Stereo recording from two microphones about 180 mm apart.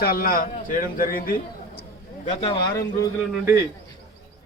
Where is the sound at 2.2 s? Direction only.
30° left (ahead or behind).